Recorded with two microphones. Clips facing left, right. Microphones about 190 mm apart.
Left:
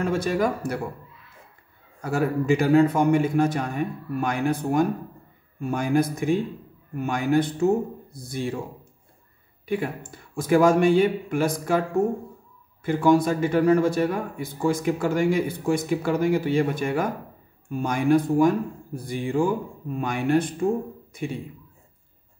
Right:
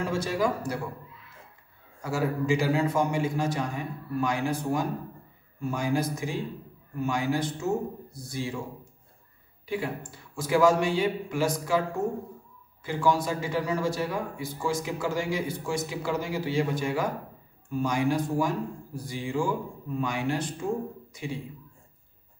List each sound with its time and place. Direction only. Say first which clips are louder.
0.0 s speech: left 4 dB; 55° left (ahead or behind)
2.0 s speech: left 4 dB; 55° left (ahead or behind)
10.3 s speech: left 4 dB; 55° left (ahead or behind)